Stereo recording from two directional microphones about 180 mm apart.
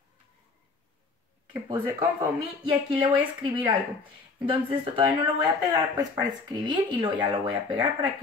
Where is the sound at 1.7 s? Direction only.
10° right (ahead or behind).